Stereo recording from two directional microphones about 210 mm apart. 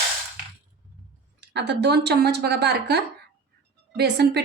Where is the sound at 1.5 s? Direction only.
55° right (ahead or behind).